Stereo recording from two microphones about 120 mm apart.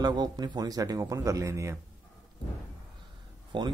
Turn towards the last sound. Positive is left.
turn(degrees=-40)  # may be behind; listen again after turning